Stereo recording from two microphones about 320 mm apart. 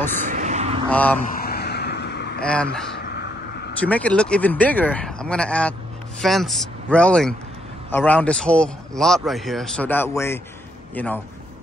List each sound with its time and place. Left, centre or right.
0.2 s a sound: right
0.8 s a man's voice: centre
1.3 s vehicle: left
2.4 s a man's voice: centre
3.8 s a man's voice: centre